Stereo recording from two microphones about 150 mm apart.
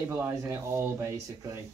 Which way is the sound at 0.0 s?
15° right (ahead or behind).